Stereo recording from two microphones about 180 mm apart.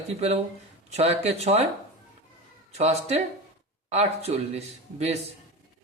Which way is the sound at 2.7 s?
35° right (ahead or behind).